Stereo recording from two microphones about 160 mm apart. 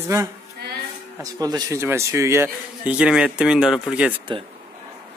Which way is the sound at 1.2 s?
20° right (ahead or behind).